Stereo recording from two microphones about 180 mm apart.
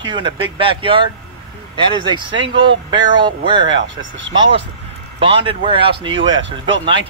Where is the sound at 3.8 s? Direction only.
90° right.